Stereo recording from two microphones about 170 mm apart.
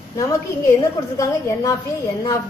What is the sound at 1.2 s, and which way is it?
Speech, 20° left (ahead or behind).